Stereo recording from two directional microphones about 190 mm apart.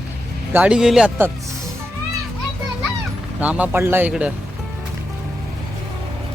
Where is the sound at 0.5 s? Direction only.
5° right (ahead or behind).